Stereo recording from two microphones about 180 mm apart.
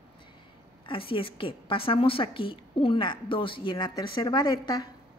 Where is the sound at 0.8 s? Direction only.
30° left (ahead or behind).